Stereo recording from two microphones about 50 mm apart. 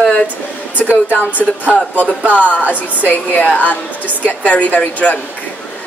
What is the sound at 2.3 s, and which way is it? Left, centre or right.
Speech, left.